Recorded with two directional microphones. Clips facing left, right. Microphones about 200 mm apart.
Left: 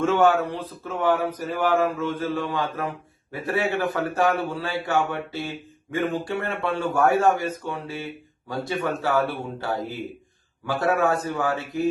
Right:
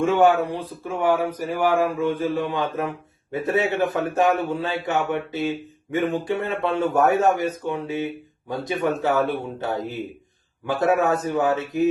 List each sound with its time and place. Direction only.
0.0 s a man's voice: 15° right (ahead or behind)